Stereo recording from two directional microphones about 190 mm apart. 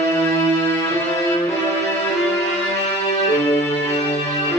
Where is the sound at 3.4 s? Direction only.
15° left (ahead or behind).